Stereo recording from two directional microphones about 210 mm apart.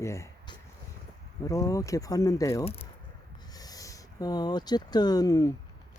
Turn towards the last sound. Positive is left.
turn(degrees=15)  # may be behind; listen again after turning